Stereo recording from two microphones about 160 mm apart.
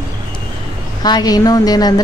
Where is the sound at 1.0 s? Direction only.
25° left (ahead or behind).